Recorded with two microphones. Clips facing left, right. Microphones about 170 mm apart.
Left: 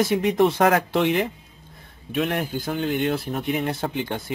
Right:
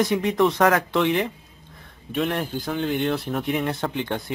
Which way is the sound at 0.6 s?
30° left (ahead or behind).